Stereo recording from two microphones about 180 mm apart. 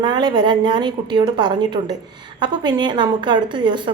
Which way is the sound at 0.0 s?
25° right (ahead or behind).